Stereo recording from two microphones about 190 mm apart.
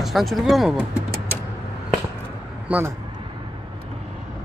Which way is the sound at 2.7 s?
5° right (ahead or behind).